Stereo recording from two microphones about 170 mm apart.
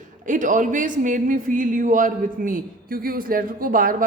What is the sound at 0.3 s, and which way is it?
A man's voice, 50° right (ahead or behind).